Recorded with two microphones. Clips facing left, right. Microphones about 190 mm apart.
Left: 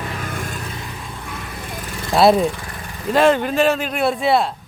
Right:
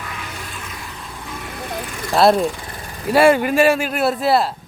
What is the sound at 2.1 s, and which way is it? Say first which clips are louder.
Speech: left 1 dB; centre (ahead or behind).